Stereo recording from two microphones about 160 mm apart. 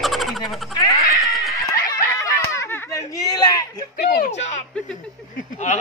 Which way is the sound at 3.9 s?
70° left (ahead or behind).